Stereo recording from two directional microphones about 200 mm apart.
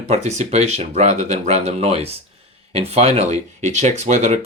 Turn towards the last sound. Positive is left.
turn(degrees=-35)  # may be behind; listen again after turning